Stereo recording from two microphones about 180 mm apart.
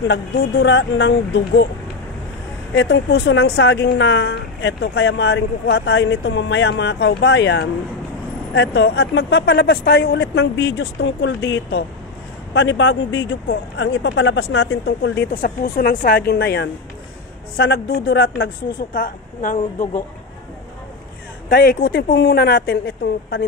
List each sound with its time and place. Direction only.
0.1 s a woman's voice: 75° left (ahead or behind)
2.7 s a woman's voice: 70° left (ahead or behind)
12.5 s a woman's voice: 90° left; by 16.7 s 75° left (ahead or behind)
17.6 s a woman's voice: 60° left (ahead or behind)
18.9 s a woman's voice: 50° left (ahead or behind)
21.5 s a woman's voice: 55° left (ahead or behind); by 23.4 s 75° left (ahead or behind)